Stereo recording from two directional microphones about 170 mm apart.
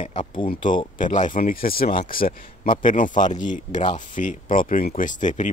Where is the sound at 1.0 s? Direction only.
50° left (ahead or behind).